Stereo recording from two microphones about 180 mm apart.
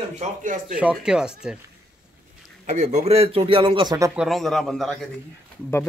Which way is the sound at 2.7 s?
40° right (ahead or behind).